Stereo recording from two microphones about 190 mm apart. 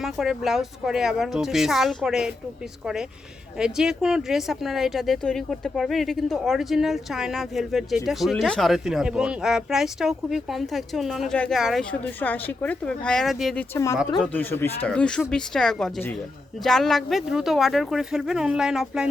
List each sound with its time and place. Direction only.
0.0 s speech: centre (ahead or behind)
13.7 s speech: 15° left (ahead or behind); by 19.0 s 5° right (ahead or behind)